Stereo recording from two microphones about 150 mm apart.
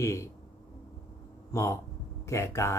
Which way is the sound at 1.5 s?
20° left (ahead or behind).